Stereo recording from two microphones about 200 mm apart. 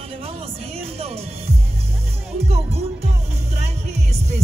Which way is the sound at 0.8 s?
30° right (ahead or behind).